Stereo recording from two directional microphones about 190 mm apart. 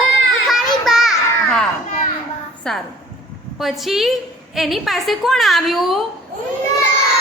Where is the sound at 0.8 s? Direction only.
Centre (ahead or behind).